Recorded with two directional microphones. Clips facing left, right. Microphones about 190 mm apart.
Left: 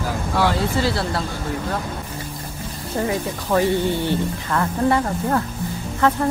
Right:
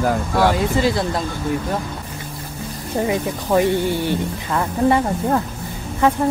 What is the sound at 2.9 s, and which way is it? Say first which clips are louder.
Speech: right 2 dB; 15° right (ahead or behind).